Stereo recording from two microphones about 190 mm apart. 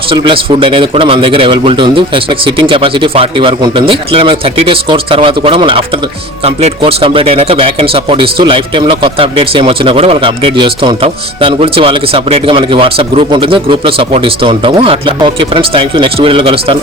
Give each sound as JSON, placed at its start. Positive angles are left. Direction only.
{"t": 0.1, "sound": "speech", "side_deg": -25}